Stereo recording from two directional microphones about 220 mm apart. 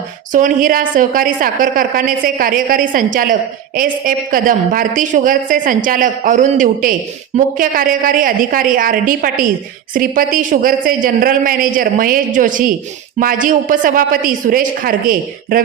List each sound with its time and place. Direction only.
0.3 s a woman's voice: 40° right (ahead or behind)